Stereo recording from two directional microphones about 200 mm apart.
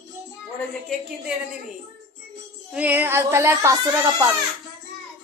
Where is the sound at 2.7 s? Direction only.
5° right (ahead or behind).